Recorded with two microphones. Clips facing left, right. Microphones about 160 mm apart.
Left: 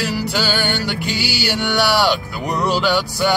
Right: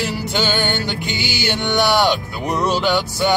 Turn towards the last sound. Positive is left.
turn(degrees=-20)  # may be behind; listen again after turning